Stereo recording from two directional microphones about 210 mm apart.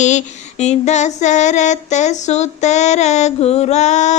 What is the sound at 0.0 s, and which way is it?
Female singing, 35° left (ahead or behind).